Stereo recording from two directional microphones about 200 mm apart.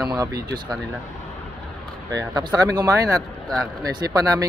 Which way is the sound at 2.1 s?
20° right (ahead or behind).